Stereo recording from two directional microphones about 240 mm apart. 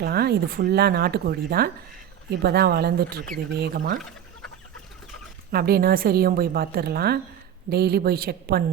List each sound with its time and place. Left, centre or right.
0.0 s a woman's voice: right
5.5 s a woman's voice: right